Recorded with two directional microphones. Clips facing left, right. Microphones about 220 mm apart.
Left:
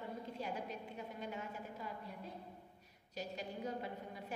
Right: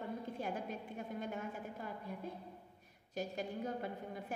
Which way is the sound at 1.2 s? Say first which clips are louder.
Right 2 dB; 50° right (ahead or behind).